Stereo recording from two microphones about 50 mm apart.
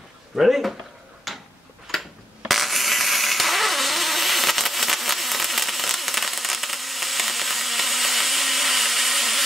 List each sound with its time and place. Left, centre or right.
0.4 s speech: centre
1.3 s tick-tock: centre
2.0 s a sound: centre